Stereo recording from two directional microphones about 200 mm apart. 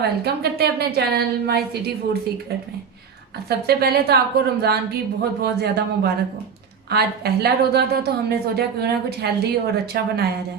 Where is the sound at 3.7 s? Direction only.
50° right (ahead or behind).